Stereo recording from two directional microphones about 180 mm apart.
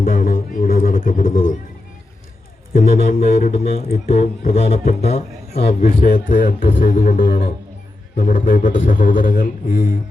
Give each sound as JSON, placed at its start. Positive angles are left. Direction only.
{"t": 0.0, "sound": "music", "side_deg": 50}
{"t": 2.7, "sound": "a man's voice", "side_deg": 50}
{"t": 4.0, "sound": "a man's voice", "side_deg": 35}
{"t": 7.3, "sound": "speech", "side_deg": 65}
{"t": 8.1, "sound": "a man's voice", "side_deg": 45}